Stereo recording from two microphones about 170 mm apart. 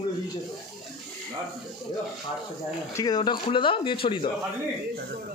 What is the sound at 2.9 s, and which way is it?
Speech, 20° left (ahead or behind).